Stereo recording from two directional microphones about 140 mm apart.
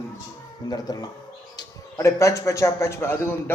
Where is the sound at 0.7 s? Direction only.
30° left (ahead or behind).